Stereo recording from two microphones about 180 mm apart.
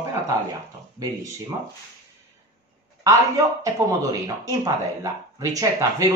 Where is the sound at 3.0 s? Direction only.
15° right (ahead or behind).